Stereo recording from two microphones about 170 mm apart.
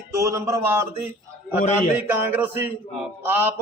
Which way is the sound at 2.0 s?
10° right (ahead or behind).